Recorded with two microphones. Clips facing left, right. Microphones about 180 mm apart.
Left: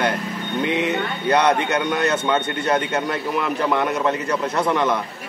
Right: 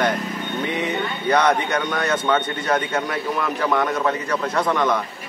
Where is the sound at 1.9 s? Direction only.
10° left (ahead or behind).